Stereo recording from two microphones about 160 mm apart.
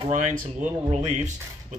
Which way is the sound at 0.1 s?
55° right (ahead or behind).